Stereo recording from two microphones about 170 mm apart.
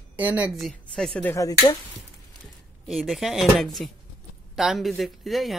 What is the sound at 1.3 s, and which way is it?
Speech, 20° left (ahead or behind).